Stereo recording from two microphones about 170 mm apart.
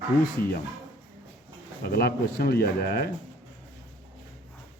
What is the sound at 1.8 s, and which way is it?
Speech, 65° left (ahead or behind).